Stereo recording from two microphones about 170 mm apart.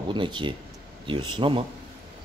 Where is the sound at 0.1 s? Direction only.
30° right (ahead or behind).